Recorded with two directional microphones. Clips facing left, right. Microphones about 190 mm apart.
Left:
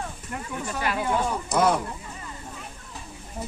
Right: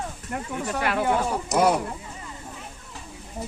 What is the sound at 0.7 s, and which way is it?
Speech, 65° right (ahead or behind).